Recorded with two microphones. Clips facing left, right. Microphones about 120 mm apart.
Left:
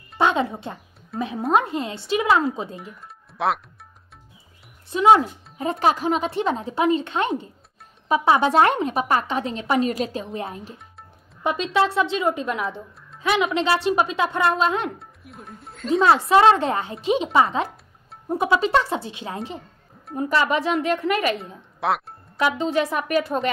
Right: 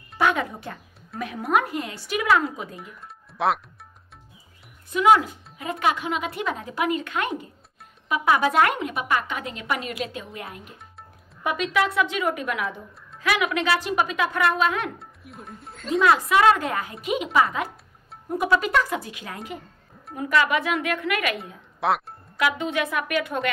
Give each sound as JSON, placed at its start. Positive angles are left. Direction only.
{"t": 0.2, "sound": "speech", "side_deg": 25}
{"t": 3.3, "sound": "speech", "side_deg": 0}
{"t": 4.9, "sound": "speech", "side_deg": 30}
{"t": 15.0, "sound": "speech", "side_deg": 0}
{"t": 16.3, "sound": "speech", "side_deg": 30}
{"t": 21.7, "sound": "speech", "side_deg": 0}
{"t": 22.4, "sound": "speech", "side_deg": 30}